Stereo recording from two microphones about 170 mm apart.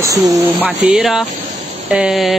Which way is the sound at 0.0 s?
20° right (ahead or behind).